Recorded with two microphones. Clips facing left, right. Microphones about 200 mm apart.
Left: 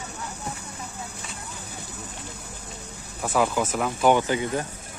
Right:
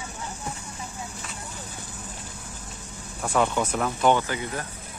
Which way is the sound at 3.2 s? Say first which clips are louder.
Left 1 dB; 5° left (ahead or behind).